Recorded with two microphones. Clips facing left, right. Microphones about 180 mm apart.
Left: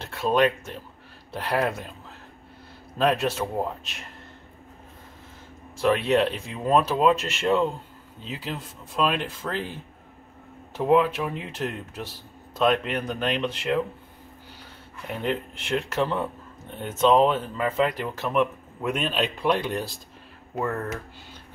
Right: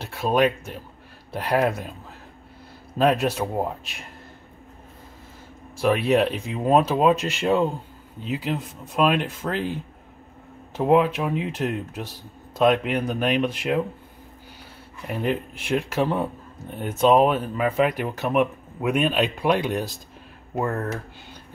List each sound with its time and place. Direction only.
0.0 s a sound: 10° right (ahead or behind)
1.3 s speech: 15° right (ahead or behind)
3.0 s speech: 15° right (ahead or behind)
5.8 s speech: 10° right (ahead or behind)
9.4 s speech: 35° right (ahead or behind)
10.8 s speech: 45° right (ahead or behind)
11.3 s speech: 15° right (ahead or behind)
15.0 s speech: 10° right (ahead or behind)
20.5 s speech: 40° right (ahead or behind)